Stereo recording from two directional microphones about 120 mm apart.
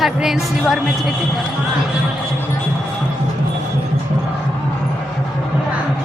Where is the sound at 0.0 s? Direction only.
5° right (ahead or behind).